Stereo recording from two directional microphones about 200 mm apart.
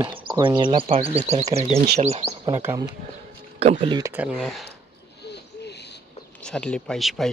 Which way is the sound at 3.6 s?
30° right (ahead or behind).